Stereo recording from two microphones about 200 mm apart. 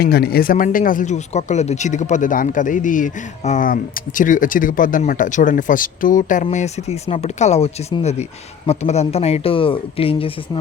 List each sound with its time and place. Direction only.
0.0 s speech: 50° left (ahead or behind); by 10.6 s 25° left (ahead or behind)